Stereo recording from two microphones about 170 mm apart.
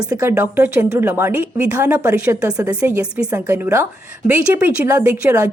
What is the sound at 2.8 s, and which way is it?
A woman's voice, 10° right (ahead or behind).